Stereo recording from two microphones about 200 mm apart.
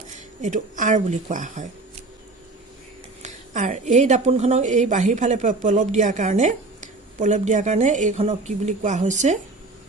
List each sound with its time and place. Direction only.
0.4 s a woman's voice: 40° right (ahead or behind)
3.2 s a woman's voice: 35° right (ahead or behind)